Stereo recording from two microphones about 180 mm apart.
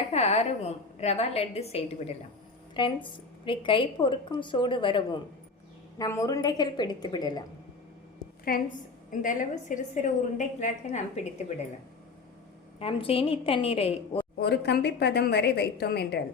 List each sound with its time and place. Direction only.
0.1 s a woman's voice: 35° left (ahead or behind)
8.5 s a woman's voice: 50° left (ahead or behind)
12.8 s a woman's voice: 30° left (ahead or behind)
14.4 s a woman's voice: 65° left (ahead or behind)